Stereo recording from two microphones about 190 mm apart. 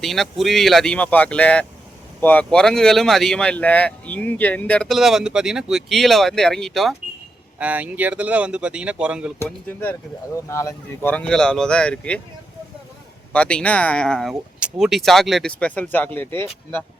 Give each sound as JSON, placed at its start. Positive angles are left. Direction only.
{"t": 0.0, "sound": "speech", "side_deg": 0}
{"t": 9.4, "sound": "speech", "side_deg": 10}
{"t": 11.1, "sound": "speech", "side_deg": 5}
{"t": 13.3, "sound": "speech", "side_deg": 5}